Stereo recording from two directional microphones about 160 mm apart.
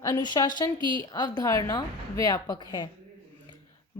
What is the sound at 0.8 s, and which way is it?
Speech, 30° right (ahead or behind).